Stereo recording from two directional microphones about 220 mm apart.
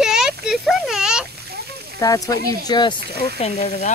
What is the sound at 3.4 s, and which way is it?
Speech, 30° left (ahead or behind).